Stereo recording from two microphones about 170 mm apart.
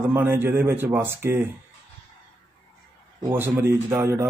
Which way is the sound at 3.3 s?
15° right (ahead or behind).